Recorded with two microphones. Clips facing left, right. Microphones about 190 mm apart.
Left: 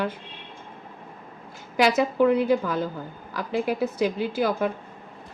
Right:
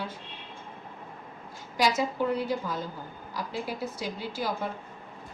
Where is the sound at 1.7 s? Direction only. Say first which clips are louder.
Left 6 dB; 60° left (ahead or behind).